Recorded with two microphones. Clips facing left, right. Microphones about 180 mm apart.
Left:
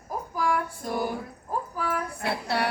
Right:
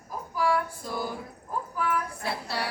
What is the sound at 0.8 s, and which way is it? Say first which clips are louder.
Music: left 4 dB; 60° left (ahead or behind).